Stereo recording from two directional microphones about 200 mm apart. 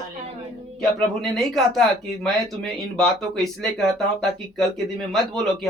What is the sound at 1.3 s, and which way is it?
Speech, centre (ahead or behind).